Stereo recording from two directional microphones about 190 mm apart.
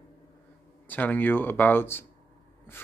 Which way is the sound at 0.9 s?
10° left (ahead or behind).